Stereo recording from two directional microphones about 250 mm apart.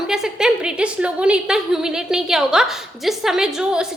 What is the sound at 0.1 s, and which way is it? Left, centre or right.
A woman's voice, centre.